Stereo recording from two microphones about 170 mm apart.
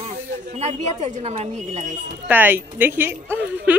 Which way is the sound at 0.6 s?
40° right (ahead or behind).